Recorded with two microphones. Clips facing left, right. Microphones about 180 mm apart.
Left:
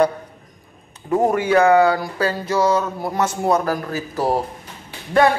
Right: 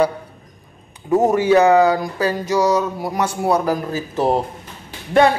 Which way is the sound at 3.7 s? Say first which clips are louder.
Right 2 dB; 25° right (ahead or behind).